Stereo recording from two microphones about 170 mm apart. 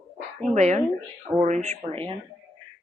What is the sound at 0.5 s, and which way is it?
A woman's voice, 45° right (ahead or behind).